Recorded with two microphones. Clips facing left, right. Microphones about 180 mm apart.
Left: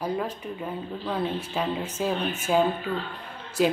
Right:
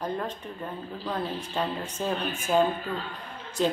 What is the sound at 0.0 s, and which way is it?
Speech, 10° left (ahead or behind).